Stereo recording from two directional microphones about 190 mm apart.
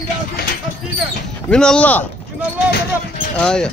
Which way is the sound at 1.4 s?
5° left (ahead or behind).